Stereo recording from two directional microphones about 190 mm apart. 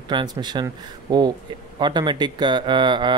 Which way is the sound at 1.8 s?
25° right (ahead or behind).